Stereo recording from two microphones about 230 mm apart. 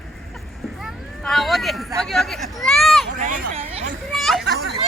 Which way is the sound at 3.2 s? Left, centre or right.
Right.